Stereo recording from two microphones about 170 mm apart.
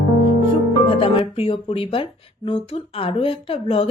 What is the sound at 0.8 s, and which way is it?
Speech, 30° left (ahead or behind).